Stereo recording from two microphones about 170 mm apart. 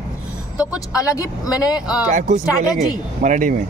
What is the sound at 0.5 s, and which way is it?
Speech, 20° left (ahead or behind).